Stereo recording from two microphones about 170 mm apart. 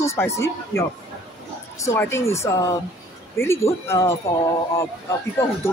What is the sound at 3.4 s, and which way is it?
Speech, 15° left (ahead or behind).